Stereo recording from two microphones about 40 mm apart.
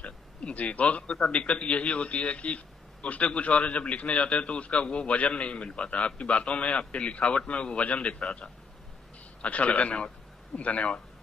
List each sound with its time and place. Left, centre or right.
0.0 s a man's voice: left